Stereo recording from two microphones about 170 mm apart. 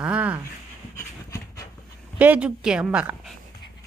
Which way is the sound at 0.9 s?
20° left (ahead or behind).